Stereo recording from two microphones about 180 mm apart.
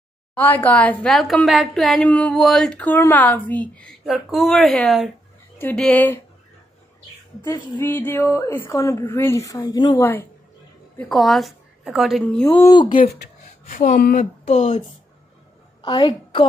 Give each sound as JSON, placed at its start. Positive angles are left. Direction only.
{"t": 0.3, "sound": "a woman's voice", "side_deg": 10}
{"t": 7.7, "sound": "a woman's voice", "side_deg": 10}
{"t": 11.0, "sound": "a woman's voice", "side_deg": 0}
{"t": 12.4, "sound": "speech", "side_deg": 20}
{"t": 12.9, "sound": "speech", "side_deg": 55}
{"t": 14.4, "sound": "speech", "side_deg": 35}
{"t": 15.8, "sound": "a woman's voice", "side_deg": 25}